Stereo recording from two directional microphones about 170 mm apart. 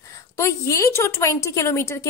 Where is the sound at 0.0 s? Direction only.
15° left (ahead or behind).